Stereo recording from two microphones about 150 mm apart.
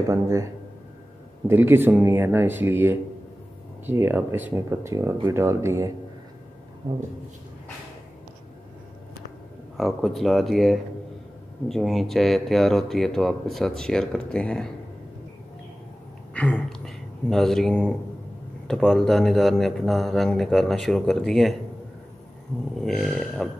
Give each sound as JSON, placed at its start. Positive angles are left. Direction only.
{"t": 0.1, "sound": "speech", "side_deg": -20}
{"t": 1.5, "sound": "speech", "side_deg": -15}
{"t": 9.8, "sound": "speech", "side_deg": 0}
{"t": 16.3, "sound": "speech", "side_deg": 10}
{"t": 22.8, "sound": "speech", "side_deg": 0}